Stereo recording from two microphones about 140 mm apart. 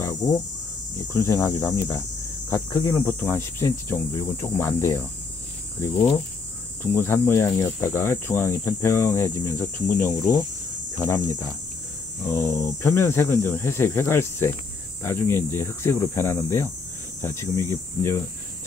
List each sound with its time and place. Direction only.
0.0 s a sound: 25° left (ahead or behind)
0.9 s speech: 20° left (ahead or behind)
6.8 s speech: 15° left (ahead or behind)